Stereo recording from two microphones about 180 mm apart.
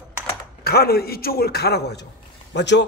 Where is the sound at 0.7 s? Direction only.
60° left (ahead or behind).